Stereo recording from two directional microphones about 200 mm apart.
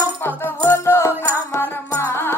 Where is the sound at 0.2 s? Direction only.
10° left (ahead or behind).